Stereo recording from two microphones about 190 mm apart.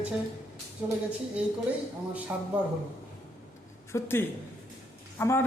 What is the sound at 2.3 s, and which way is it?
Speech, 10° right (ahead or behind).